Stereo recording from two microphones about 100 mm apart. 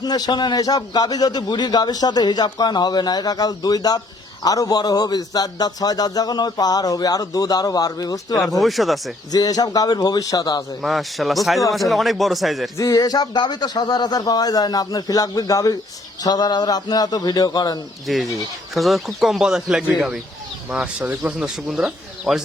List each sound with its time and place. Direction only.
0.0 s a man's voice: 45° left (ahead or behind)
8.6 s speech: centre (ahead or behind)
9.3 s speech: 40° left (ahead or behind)
10.8 s speech: centre (ahead or behind)
12.7 s a man's voice: 35° left (ahead or behind)
18.0 s speech: centre (ahead or behind)